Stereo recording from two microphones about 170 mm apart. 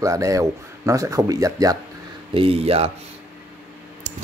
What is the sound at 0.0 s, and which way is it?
Speech, 20° right (ahead or behind).